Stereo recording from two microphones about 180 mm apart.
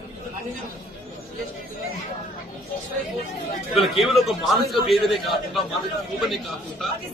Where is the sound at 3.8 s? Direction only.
Centre (ahead or behind).